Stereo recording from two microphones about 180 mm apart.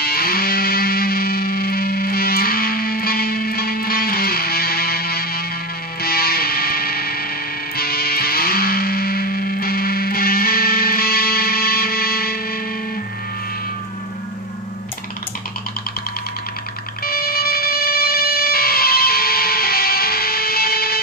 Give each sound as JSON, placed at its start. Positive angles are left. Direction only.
{"t": 0.0, "sound": "music", "side_deg": 55}
{"t": 17.0, "sound": "music", "side_deg": 55}